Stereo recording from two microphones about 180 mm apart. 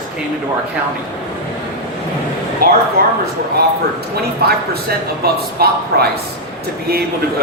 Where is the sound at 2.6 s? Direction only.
55° right (ahead or behind).